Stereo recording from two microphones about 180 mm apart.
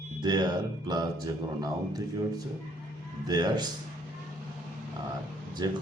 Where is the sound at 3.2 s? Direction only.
20° right (ahead or behind).